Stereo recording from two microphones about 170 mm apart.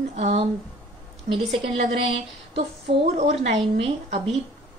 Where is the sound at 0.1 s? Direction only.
35° right (ahead or behind).